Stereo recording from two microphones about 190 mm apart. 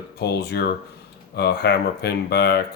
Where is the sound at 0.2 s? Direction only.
60° left (ahead or behind).